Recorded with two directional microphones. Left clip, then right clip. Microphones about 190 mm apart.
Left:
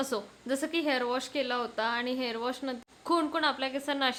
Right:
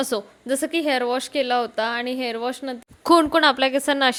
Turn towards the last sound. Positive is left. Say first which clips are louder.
# right 11 dB
turn(degrees=-40)  # may be behind; listen again after turning